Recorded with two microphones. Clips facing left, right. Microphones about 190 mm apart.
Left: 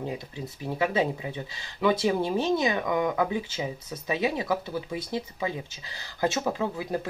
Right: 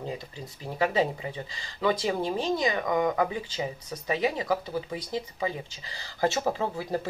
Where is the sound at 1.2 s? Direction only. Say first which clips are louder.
Left 1 dB; 15° left (ahead or behind).